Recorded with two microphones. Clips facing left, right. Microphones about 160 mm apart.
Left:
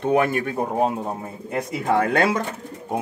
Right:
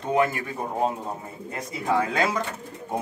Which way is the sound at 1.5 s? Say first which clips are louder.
Left 4 dB; 65° left (ahead or behind).